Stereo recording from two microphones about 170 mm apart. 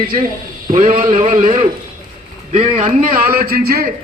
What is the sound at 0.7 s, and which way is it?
Speech, 45° right (ahead or behind).